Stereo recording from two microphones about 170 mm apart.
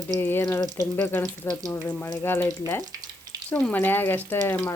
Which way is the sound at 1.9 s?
15° left (ahead or behind).